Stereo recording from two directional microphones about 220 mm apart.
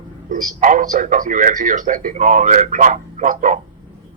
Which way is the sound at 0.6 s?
35° right (ahead or behind).